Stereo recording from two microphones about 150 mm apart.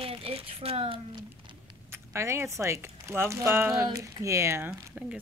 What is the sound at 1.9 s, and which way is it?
Speech, 20° right (ahead or behind).